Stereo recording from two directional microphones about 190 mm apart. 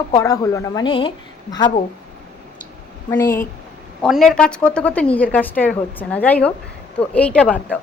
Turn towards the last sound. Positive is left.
turn(degrees=5)  # may be behind; listen again after turning